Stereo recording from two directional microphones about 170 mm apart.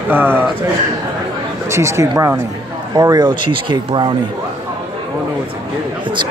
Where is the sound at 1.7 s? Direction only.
15° right (ahead or behind).